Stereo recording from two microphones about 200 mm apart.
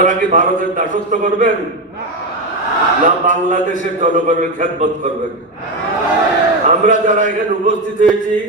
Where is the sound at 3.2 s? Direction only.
40° right (ahead or behind).